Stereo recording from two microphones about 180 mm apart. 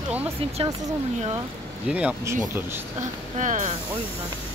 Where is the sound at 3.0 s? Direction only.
45° right (ahead or behind).